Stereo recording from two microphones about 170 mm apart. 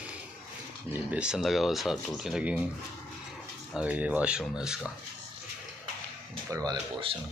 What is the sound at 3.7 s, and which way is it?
Speech, 10° right (ahead or behind).